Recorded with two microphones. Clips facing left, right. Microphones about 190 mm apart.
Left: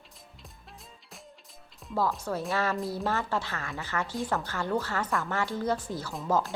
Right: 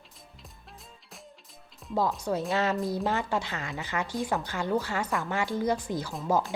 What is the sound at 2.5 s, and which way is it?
Speech, 20° right (ahead or behind).